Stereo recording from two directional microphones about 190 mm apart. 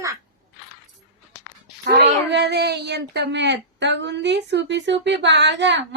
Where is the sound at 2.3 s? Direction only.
60° right (ahead or behind).